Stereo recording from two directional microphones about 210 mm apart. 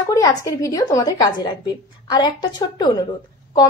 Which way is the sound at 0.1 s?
15° left (ahead or behind).